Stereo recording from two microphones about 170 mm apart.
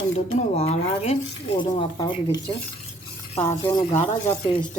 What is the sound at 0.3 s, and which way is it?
Speech, 40° left (ahead or behind).